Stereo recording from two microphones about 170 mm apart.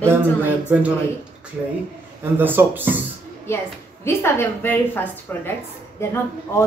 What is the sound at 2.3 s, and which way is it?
Speech, 10° right (ahead or behind).